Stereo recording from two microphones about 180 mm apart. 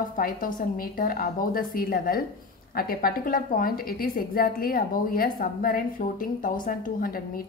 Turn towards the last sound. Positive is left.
turn(degrees=50)  # may be behind; listen again after turning